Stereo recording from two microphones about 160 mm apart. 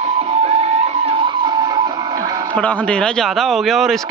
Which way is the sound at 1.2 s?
25° right (ahead or behind).